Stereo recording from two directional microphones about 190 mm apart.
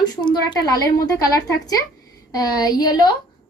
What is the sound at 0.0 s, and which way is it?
A woman's voice, 25° left (ahead or behind).